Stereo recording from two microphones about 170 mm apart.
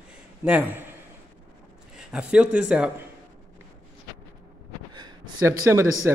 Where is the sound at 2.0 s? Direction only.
5° right (ahead or behind).